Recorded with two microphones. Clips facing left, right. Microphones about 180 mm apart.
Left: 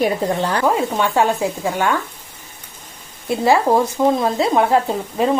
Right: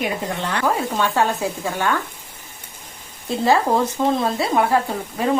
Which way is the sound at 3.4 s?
15° left (ahead or behind).